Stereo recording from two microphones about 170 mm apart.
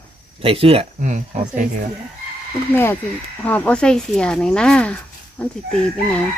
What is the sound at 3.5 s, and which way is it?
Speech, 10° left (ahead or behind).